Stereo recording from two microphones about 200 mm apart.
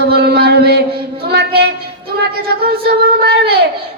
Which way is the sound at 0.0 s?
50° right (ahead or behind).